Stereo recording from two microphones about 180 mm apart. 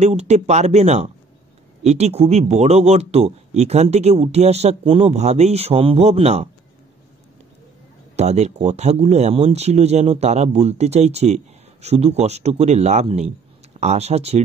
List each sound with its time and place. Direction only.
0.0 s speech: 40° right (ahead or behind)
8.2 s speech: 40° right (ahead or behind)